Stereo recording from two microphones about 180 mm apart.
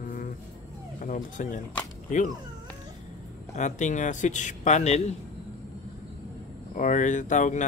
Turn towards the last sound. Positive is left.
turn(degrees=45)  # may be behind; listen again after turning